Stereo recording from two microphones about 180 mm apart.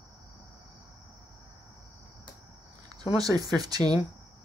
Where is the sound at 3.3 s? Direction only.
20° right (ahead or behind).